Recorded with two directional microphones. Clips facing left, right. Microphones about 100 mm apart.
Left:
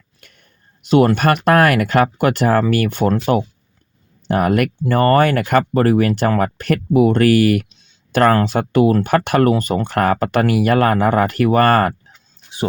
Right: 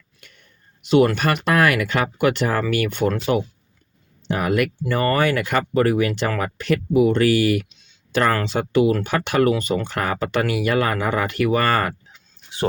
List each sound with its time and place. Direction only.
0.2 s speech: 45° left (ahead or behind)